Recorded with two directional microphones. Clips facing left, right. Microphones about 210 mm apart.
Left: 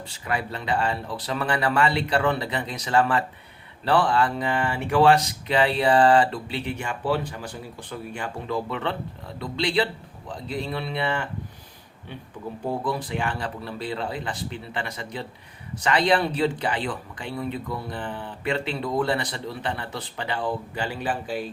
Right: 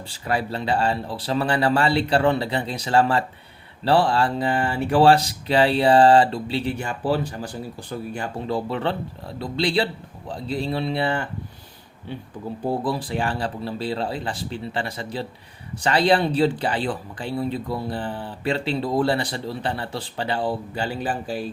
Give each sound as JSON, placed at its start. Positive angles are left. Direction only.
{"t": 0.1, "sound": "speech", "side_deg": -30}
{"t": 12.8, "sound": "speech", "side_deg": -35}